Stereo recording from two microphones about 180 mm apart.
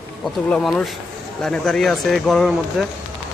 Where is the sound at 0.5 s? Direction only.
Centre (ahead or behind).